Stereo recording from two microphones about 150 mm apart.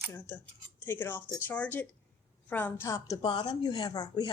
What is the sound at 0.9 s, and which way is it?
Speech, 15° left (ahead or behind).